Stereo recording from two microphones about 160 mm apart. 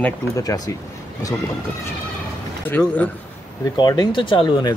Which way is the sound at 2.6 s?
10° left (ahead or behind).